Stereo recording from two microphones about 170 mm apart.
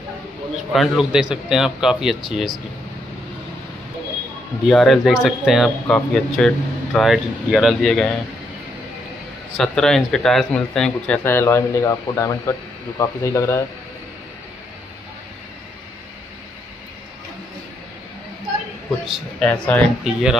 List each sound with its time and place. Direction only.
0.7 s speech: centre (ahead or behind)
4.6 s speech: centre (ahead or behind)
9.6 s a man's voice: 5° left (ahead or behind)
19.0 s speech: centre (ahead or behind)